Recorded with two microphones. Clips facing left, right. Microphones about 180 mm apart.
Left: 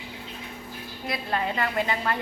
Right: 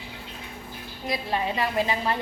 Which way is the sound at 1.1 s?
15° right (ahead or behind).